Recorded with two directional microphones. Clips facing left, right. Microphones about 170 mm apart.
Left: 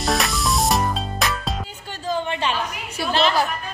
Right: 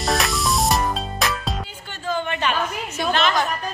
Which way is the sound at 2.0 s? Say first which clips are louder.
Even; 30° left (ahead or behind).